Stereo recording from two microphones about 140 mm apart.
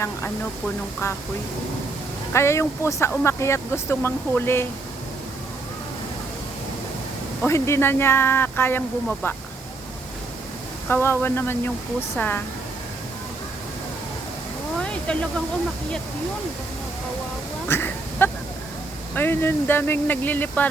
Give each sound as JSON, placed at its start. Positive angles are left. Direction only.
{"t": 1.0, "sound": "speech", "side_deg": 20}
{"t": 2.3, "sound": "speech", "side_deg": 20}
{"t": 7.4, "sound": "speech", "side_deg": 20}
{"t": 10.8, "sound": "speech", "side_deg": 15}
{"t": 14.8, "sound": "a sound", "side_deg": 5}
{"t": 17.7, "sound": "duck", "side_deg": 15}
{"t": 19.1, "sound": "speech", "side_deg": 15}